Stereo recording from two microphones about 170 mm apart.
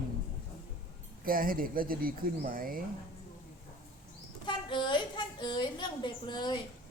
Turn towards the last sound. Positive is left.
turn(degrees=25)  # may be behind; listen again after turning